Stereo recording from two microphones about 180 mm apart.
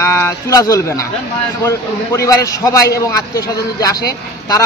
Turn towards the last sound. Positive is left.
turn(degrees=20)  # may be behind; listen again after turning